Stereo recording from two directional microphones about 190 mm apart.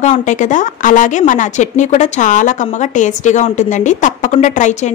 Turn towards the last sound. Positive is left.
turn(degrees=40)  # may be behind; listen again after turning